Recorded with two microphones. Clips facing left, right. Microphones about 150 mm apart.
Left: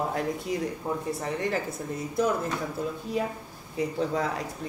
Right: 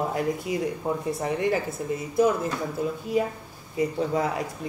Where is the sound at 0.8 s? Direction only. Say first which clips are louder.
Right 3 dB; 25° right (ahead or behind).